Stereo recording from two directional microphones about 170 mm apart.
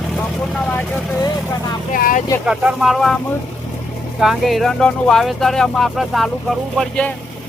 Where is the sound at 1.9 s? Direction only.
55° left (ahead or behind).